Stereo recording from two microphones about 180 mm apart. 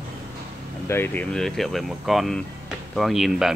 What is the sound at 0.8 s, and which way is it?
Speech, 15° left (ahead or behind).